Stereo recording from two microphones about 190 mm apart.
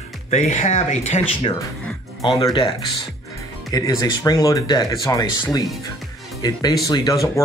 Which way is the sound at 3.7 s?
20° left (ahead or behind).